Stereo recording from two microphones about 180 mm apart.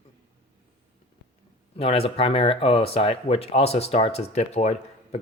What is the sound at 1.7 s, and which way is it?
Speech, 30° left (ahead or behind).